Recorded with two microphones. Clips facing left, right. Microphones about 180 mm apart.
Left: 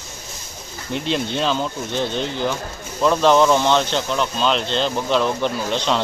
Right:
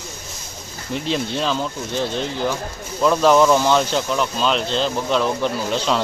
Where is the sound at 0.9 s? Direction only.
Centre (ahead or behind).